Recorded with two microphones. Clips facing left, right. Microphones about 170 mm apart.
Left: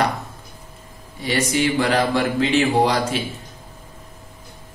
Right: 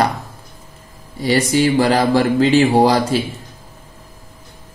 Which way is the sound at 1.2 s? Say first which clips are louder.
Right 5 dB; 35° right (ahead or behind).